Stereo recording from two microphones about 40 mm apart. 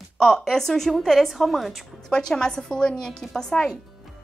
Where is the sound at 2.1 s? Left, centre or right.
Centre.